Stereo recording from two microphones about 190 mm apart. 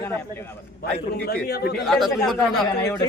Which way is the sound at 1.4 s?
55° left (ahead or behind).